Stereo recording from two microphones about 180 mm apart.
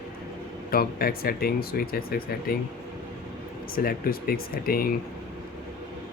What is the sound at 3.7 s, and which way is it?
Speech, 55° left (ahead or behind).